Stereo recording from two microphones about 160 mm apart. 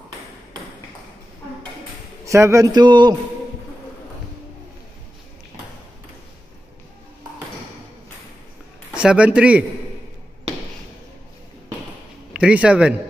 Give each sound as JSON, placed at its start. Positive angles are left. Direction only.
{"t": 2.2, "sound": "a man's voice", "side_deg": -20}
{"t": 8.9, "sound": "speech", "side_deg": -5}
{"t": 12.3, "sound": "speech", "side_deg": -5}